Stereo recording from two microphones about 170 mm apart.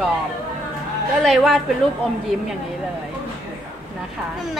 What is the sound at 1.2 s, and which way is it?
Speech, centre (ahead or behind).